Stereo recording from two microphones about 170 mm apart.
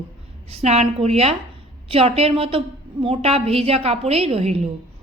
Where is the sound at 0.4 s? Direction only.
40° right (ahead or behind).